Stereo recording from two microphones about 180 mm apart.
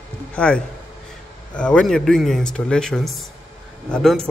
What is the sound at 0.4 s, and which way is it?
A man's voice, 5° left (ahead or behind).